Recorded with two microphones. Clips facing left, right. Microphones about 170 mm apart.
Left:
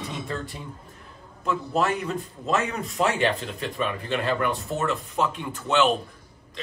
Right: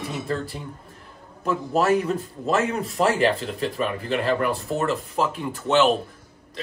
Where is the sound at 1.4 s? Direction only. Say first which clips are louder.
Right 2 dB; 5° right (ahead or behind).